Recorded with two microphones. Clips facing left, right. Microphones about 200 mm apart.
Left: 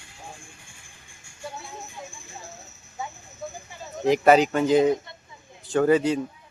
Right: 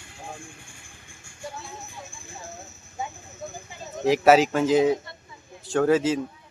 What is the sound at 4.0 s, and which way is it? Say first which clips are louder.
Speech: even; centre (ahead or behind).